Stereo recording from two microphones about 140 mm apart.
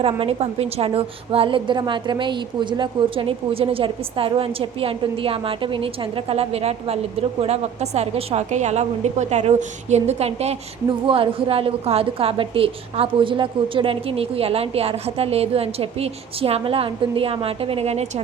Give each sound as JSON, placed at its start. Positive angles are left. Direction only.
{"t": 0.0, "sound": "a woman's voice", "side_deg": -40}